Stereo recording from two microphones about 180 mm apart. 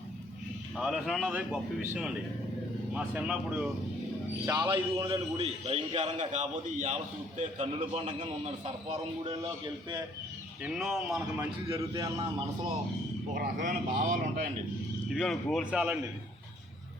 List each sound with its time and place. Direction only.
0.8 s a man's voice: centre (ahead or behind)
2.9 s speech: 5° right (ahead or behind)
4.4 s a man's voice: 20° right (ahead or behind)
5.4 s a man's voice: 35° right (ahead or behind)
10.6 s a man's voice: centre (ahead or behind)
11.8 s speech: 20° right (ahead or behind)
13.3 s speech: 45° right (ahead or behind)
15.1 s a man's voice: centre (ahead or behind)